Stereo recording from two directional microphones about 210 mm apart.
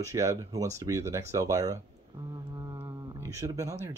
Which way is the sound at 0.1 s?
15° right (ahead or behind).